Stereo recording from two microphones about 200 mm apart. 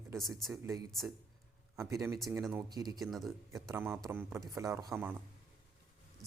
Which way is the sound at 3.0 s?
Centre (ahead or behind).